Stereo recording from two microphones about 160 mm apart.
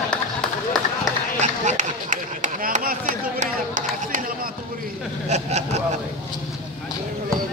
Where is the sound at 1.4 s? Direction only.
50° right (ahead or behind).